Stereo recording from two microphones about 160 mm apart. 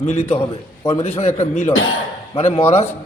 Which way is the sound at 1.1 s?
45° left (ahead or behind).